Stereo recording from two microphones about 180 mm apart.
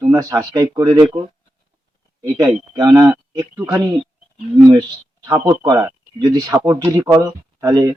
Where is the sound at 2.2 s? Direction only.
20° right (ahead or behind).